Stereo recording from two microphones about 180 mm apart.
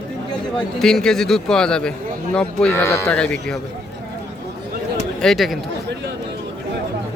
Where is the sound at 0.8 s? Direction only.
Centre (ahead or behind).